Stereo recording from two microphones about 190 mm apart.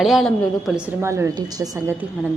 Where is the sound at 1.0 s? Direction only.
15° right (ahead or behind).